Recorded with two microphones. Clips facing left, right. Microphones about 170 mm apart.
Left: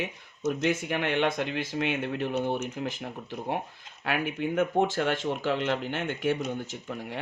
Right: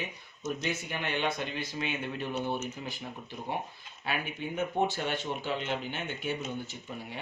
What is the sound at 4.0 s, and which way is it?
Speech, 90° left.